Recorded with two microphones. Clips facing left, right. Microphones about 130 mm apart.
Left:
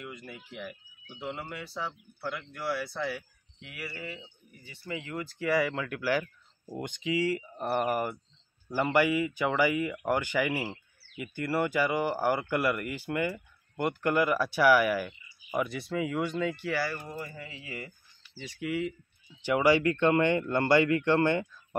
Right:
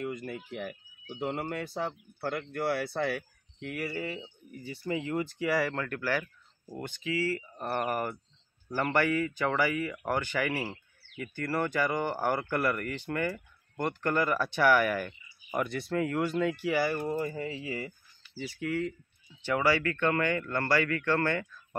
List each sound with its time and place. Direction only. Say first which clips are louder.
0.0 s speech: right 7 dB; 45° right (ahead or behind)
4.6 s speech: right 6 dB; 35° right (ahead or behind)
5.5 s speech: left 3 dB; centre (ahead or behind)
16.6 s speech: right 3 dB; 20° right (ahead or behind)
17.0 s speech: right 8 dB; 45° right (ahead or behind); by 17.9 s 30° right (ahead or behind)
18.3 s speech: right 5 dB; 5° right (ahead or behind)
18.6 s speech: left 1 dB; 10° left (ahead or behind)